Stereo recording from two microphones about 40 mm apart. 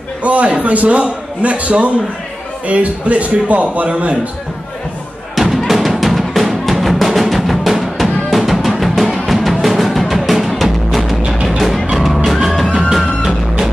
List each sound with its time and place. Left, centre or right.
0.2 s a man's voice: right
5.3 s music: centre